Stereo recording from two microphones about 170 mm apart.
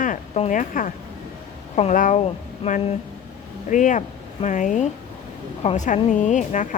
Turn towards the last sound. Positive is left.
turn(degrees=45)  # may be behind; listen again after turning